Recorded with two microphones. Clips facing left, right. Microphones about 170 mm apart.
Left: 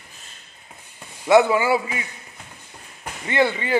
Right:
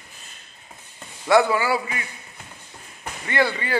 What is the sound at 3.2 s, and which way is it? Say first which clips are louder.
Speech: left 2 dB; 20° left (ahead or behind).